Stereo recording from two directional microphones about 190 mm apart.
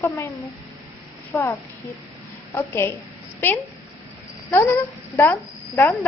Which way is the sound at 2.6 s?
15° left (ahead or behind).